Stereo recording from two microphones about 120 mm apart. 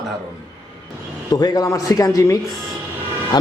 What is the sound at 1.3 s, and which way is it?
A man's voice, 30° left (ahead or behind).